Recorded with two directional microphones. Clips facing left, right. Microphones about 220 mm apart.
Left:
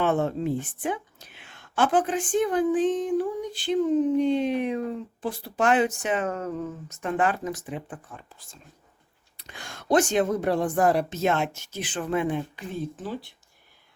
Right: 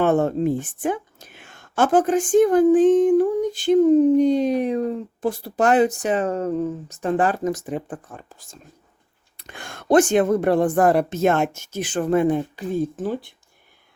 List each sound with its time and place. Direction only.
0.0 s speech: 45° right (ahead or behind)